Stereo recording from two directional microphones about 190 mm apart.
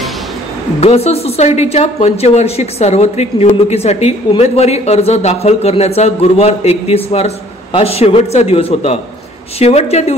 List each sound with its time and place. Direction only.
0.7 s speech: 30° left (ahead or behind)